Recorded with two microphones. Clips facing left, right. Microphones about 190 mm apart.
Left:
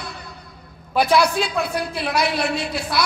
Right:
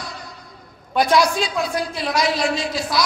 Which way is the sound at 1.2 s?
60° left (ahead or behind).